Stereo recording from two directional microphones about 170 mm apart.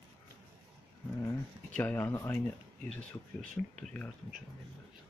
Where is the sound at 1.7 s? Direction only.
10° left (ahead or behind).